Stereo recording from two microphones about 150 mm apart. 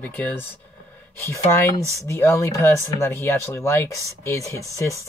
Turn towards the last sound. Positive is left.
turn(degrees=20)  # may be behind; listen again after turning